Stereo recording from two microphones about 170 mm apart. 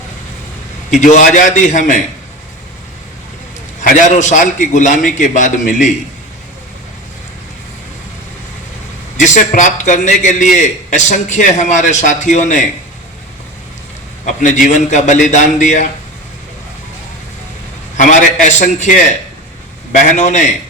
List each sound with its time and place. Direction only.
0.9 s a man's voice: 45° left (ahead or behind)
3.8 s a man's voice: 45° left (ahead or behind)
9.1 s a man's voice: 45° left (ahead or behind)
14.3 s a man's voice: 45° left (ahead or behind)
17.9 s a man's voice: 45° left (ahead or behind)
20.1 s a man's voice: 45° left (ahead or behind)